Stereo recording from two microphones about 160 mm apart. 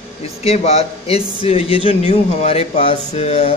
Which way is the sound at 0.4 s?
40° left (ahead or behind).